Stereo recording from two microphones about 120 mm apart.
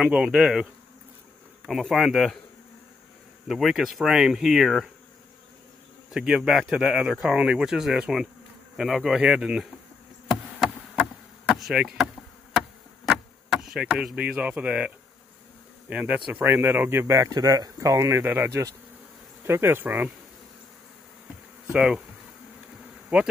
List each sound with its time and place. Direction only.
0.0 s speech: 10° right (ahead or behind)
1.7 s speech: centre (ahead or behind)
3.4 s speech: centre (ahead or behind)
6.1 s speech: 5° right (ahead or behind)
11.4 s speech: 5° right (ahead or behind)
12.5 s insect: centre (ahead or behind)
15.9 s speech: 10° right (ahead or behind)
21.7 s speech: 5° right (ahead or behind)
23.1 s speech: 10° right (ahead or behind)